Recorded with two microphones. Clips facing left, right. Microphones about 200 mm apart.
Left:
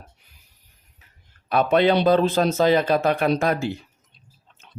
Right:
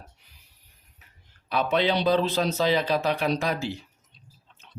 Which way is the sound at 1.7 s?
50° left (ahead or behind).